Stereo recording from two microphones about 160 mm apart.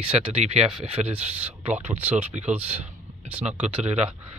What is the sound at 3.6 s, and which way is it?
Speech, 40° right (ahead or behind).